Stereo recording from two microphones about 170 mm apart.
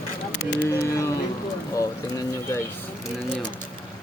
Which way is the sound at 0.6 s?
15° left (ahead or behind).